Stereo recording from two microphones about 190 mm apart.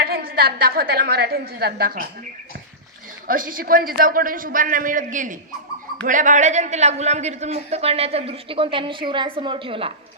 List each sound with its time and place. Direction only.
0.0 s a woman's voice: 50° right (ahead or behind)
3.3 s a man's voice: 45° right (ahead or behind); by 9.9 s 30° right (ahead or behind)